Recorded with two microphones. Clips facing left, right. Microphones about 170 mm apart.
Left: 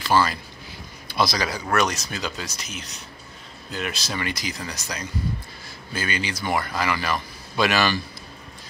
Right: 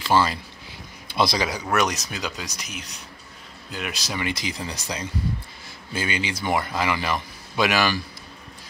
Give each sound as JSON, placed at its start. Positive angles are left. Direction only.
{"t": 0.0, "sound": "a man's voice", "side_deg": -25}
{"t": 4.4, "sound": "a man's voice", "side_deg": -25}